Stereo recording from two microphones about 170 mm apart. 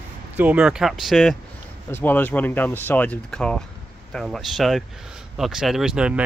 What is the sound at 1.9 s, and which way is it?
Speech, 10° left (ahead or behind).